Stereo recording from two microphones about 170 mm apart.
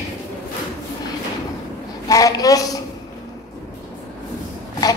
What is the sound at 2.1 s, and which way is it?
Speech, 20° left (ahead or behind).